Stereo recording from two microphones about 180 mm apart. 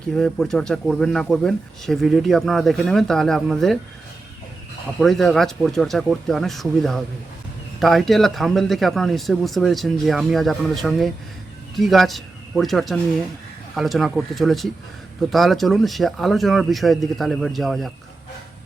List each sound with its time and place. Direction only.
0.2 s speech: 5° left (ahead or behind)
4.9 s speech: centre (ahead or behind)